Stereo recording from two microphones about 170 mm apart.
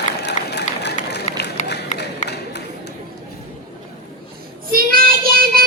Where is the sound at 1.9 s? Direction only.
45° left (ahead or behind).